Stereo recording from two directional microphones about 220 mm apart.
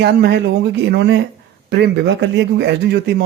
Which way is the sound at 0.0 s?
55° right (ahead or behind).